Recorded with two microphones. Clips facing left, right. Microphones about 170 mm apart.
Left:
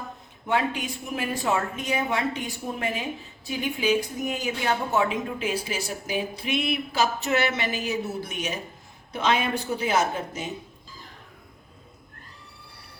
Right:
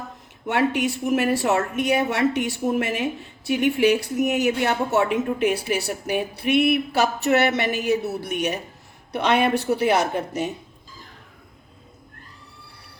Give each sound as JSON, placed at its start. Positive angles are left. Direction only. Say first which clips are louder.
{"t": 0.4, "sound": "a woman's voice", "louder": "right 5 dB", "side_deg": -75}